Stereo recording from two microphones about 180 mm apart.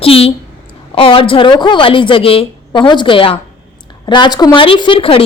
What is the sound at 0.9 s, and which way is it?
A woman's voice, 30° left (ahead or behind).